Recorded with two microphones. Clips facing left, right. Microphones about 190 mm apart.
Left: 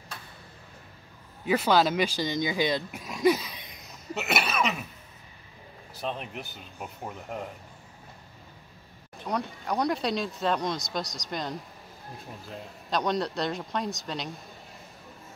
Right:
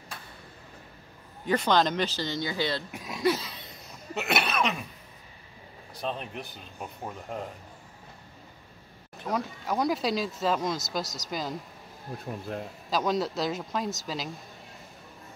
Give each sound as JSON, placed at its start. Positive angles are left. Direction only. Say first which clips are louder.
{"t": 1.4, "sound": "speech", "louder": "left 1 dB", "side_deg": 5}
{"t": 2.9, "sound": "a sound", "louder": "left 1 dB", "side_deg": 0}
{"t": 3.3, "sound": "a sound", "louder": "left 3 dB", "side_deg": 15}
{"t": 4.1, "sound": "cough", "louder": "even", "side_deg": 0}
{"t": 5.9, "sound": "speech", "louder": "even", "side_deg": 5}
{"t": 9.2, "sound": "speech", "louder": "even", "side_deg": 0}
{"t": 12.3, "sound": "speech", "louder": "right 8 dB", "side_deg": -50}
{"t": 12.9, "sound": "speech", "louder": "even", "side_deg": 0}